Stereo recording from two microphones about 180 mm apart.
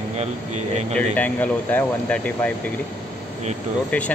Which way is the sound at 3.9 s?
10° left (ahead or behind).